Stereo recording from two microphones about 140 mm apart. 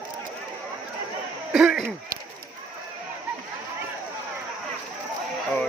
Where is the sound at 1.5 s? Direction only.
Centre (ahead or behind).